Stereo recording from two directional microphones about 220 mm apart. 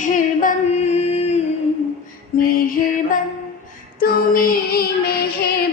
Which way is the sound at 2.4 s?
40° left (ahead or behind).